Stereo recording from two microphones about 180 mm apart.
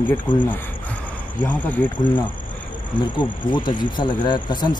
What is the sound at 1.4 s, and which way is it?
Speech, 10° left (ahead or behind).